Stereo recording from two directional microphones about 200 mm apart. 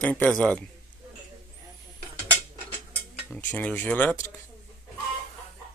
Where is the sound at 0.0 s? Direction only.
5° left (ahead or behind).